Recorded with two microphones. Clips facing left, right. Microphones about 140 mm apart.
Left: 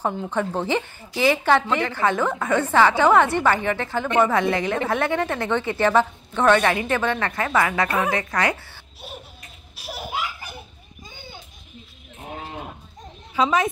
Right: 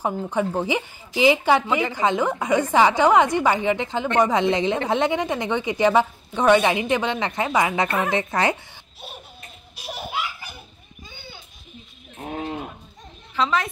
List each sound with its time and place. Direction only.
0.0 s a woman's voice: 10° right (ahead or behind)
13.3 s a woman's voice: 15° left (ahead or behind)